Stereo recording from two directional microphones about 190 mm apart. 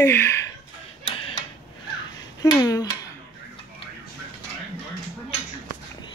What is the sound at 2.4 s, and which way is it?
Speech, 20° left (ahead or behind).